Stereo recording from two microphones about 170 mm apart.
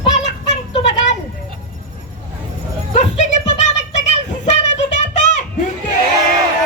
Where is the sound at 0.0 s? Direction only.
35° left (ahead or behind).